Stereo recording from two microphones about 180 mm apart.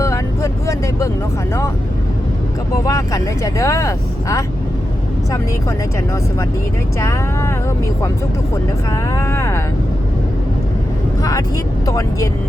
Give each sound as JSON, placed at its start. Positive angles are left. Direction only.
{"t": 0.0, "sound": "vehicle", "side_deg": 15}
{"t": 2.8, "sound": "speech", "side_deg": 15}
{"t": 7.0, "sound": "speech", "side_deg": 15}
{"t": 8.9, "sound": "speech", "side_deg": 15}
{"t": 11.2, "sound": "speech", "side_deg": 20}